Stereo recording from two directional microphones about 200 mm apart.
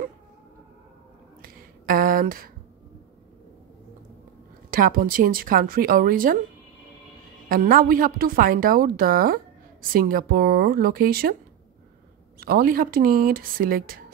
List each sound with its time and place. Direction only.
1.4 s a sound: 45° right (ahead or behind)
4.6 s a woman's voice: 45° right (ahead or behind)
7.4 s a woman's voice: 45° right (ahead or behind)
12.4 s a woman's voice: 50° right (ahead or behind)